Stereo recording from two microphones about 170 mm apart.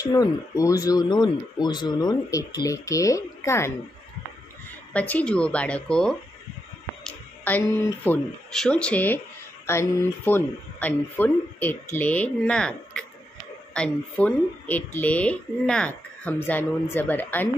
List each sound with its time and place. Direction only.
0.0 s speech: 20° left (ahead or behind)
4.9 s speech: 10° left (ahead or behind)